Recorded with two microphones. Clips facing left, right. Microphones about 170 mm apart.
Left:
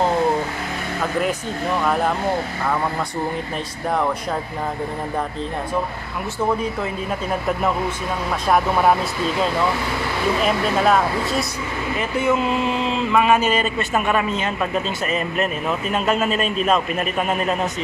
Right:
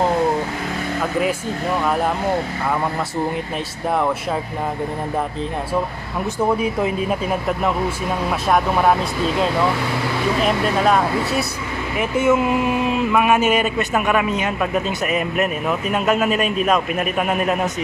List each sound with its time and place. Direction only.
8.5 s speech: centre (ahead or behind)
10.4 s speech: centre (ahead or behind)
12.3 s speech: 15° right (ahead or behind)